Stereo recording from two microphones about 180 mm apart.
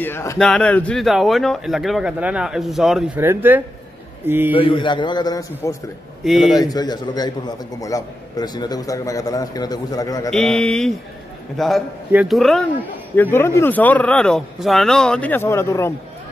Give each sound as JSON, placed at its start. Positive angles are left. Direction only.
{"t": 0.0, "sound": "a man's voice", "side_deg": 15}
{"t": 4.6, "sound": "a man's voice", "side_deg": 30}
{"t": 6.2, "sound": "a man's voice", "side_deg": 0}
{"t": 6.5, "sound": "a man's voice", "side_deg": 20}
{"t": 10.3, "sound": "a man's voice", "side_deg": 5}
{"t": 13.1, "sound": "speech", "side_deg": 10}